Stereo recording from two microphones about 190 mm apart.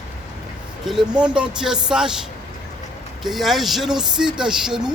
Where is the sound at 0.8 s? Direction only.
5° right (ahead or behind).